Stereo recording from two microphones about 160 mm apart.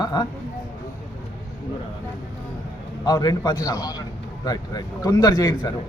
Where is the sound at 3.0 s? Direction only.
25° left (ahead or behind).